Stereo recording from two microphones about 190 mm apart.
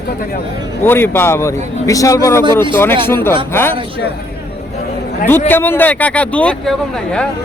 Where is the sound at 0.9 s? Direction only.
10° left (ahead or behind).